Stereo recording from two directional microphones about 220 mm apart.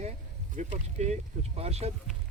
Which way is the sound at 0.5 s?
30° right (ahead or behind).